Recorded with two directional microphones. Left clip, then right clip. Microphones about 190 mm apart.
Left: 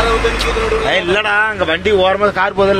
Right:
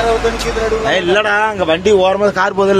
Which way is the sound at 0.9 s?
15° right (ahead or behind).